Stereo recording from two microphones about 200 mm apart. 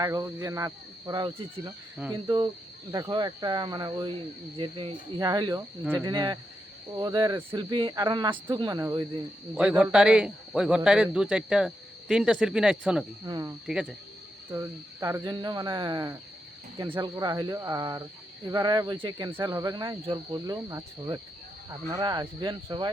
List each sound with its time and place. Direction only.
0.0 s speech: 15° right (ahead or behind)
6.1 s speech: 20° right (ahead or behind)
9.6 s a man's voice: 5° right (ahead or behind)
13.2 s speech: 20° right (ahead or behind)
13.7 s a man's voice: centre (ahead or behind)
14.5 s speech: 15° right (ahead or behind)